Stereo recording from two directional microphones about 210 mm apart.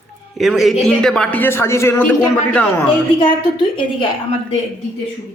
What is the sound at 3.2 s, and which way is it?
Speech, 25° left (ahead or behind).